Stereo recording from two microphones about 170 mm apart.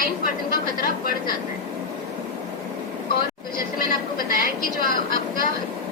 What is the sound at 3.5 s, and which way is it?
Vehicle, 60° left (ahead or behind).